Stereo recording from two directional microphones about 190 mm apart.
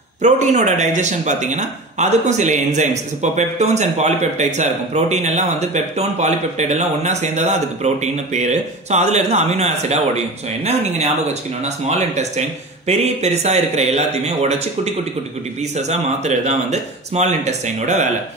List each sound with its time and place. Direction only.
0.2 s speech: 40° right (ahead or behind)
12.2 s speech: 35° right (ahead or behind)
15.7 s speech: 35° right (ahead or behind)